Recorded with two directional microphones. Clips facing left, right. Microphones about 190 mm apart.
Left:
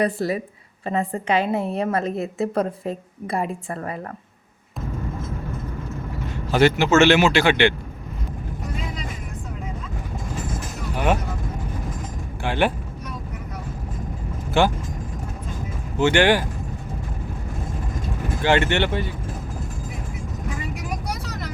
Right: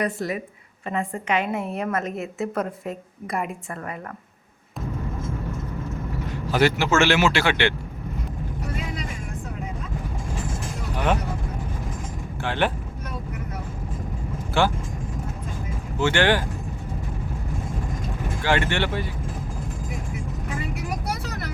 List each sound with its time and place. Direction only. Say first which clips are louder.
0.0 s a woman's voice: left 4 dB; 35° left (ahead or behind)
6.5 s speech: left 4 dB; 25° left (ahead or behind)
12.4 s speech: left 3 dB; 10° left (ahead or behind)
14.5 s speech: left 3 dB; 20° left (ahead or behind)
16.0 s speech: left 3 dB; 15° left (ahead or behind)
18.4 s speech: left 4 dB; 25° left (ahead or behind)